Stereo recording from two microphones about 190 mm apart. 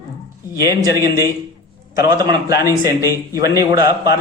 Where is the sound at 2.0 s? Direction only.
15° right (ahead or behind).